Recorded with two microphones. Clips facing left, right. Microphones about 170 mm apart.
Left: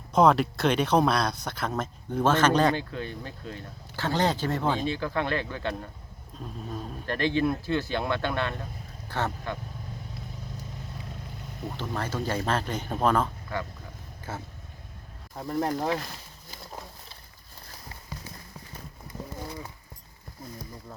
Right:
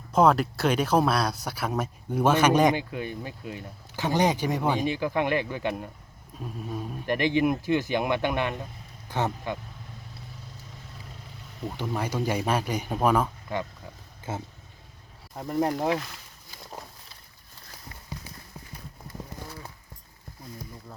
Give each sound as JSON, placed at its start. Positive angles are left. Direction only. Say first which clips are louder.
{"t": 0.1, "sound": "speech", "louder": "even", "side_deg": -5}
{"t": 11.8, "sound": "speech", "louder": "right 3 dB", "side_deg": -15}
{"t": 15.4, "sound": "speech", "louder": "right 2 dB", "side_deg": -10}